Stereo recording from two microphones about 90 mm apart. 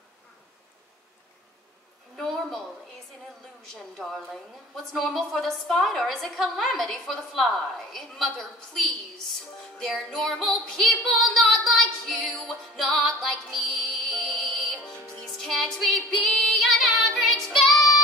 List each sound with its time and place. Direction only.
2.1 s a sound: 5° left (ahead or behind)
3.9 s a woman's voice: centre (ahead or behind)
9.8 s a woman's voice: 5° left (ahead or behind)
11.4 s music: 10° left (ahead or behind)
17.7 s child singing: 45° left (ahead or behind)